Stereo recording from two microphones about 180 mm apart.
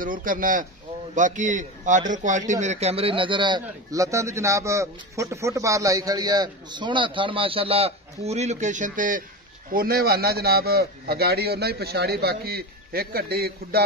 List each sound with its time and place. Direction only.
0.0 s a man's voice: 50° right (ahead or behind)